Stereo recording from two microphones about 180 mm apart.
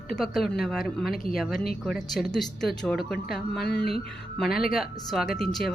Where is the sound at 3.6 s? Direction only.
65° left (ahead or behind).